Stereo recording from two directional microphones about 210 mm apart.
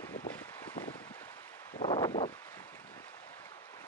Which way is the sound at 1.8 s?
20° left (ahead or behind).